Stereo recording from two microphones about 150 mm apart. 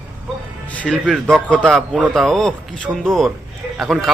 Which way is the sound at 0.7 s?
5° left (ahead or behind).